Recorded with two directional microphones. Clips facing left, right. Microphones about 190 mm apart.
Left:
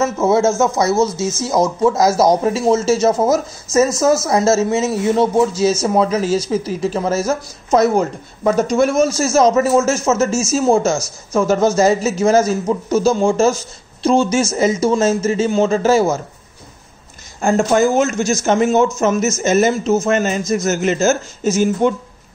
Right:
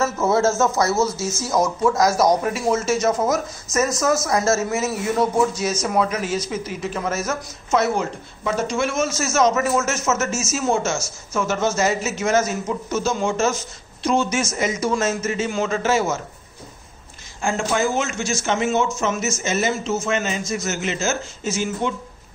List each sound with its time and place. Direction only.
0.0 s a man's voice: 20° left (ahead or behind)
17.4 s speech: 40° left (ahead or behind)